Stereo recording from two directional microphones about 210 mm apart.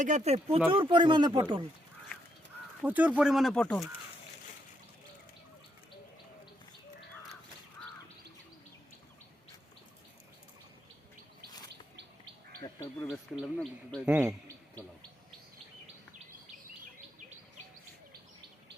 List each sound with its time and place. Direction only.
0.0 s speech: 35° right (ahead or behind)
2.8 s speech: 5° right (ahead or behind)
12.6 s speech: 15° left (ahead or behind)
13.4 s speech: centre (ahead or behind)